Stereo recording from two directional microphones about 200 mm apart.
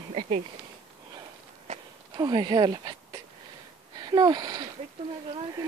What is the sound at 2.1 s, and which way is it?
Speech, 20° right (ahead or behind).